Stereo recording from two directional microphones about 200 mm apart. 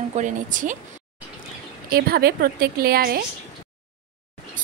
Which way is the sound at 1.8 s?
50° right (ahead or behind).